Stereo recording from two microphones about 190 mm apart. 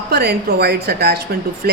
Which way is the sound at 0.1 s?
55° right (ahead or behind).